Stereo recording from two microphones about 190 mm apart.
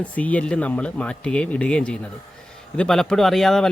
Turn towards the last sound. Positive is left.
turn(degrees=0)  # may be behind; listen again after turning